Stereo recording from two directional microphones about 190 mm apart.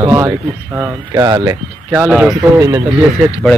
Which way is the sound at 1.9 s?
10° right (ahead or behind).